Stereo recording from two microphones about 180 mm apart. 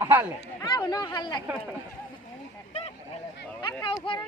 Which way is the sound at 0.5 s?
25° left (ahead or behind).